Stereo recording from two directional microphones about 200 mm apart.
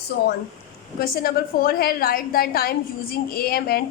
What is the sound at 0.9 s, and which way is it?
A woman's voice, 50° left (ahead or behind).